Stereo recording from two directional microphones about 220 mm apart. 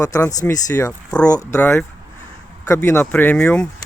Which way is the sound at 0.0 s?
15° left (ahead or behind).